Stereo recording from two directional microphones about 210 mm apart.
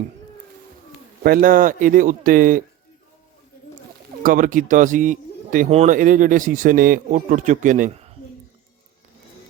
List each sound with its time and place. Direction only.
1.2 s speech: 45° right (ahead or behind)
4.2 s speech: 40° right (ahead or behind)